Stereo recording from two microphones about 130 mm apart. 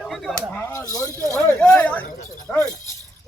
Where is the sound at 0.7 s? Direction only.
25° left (ahead or behind).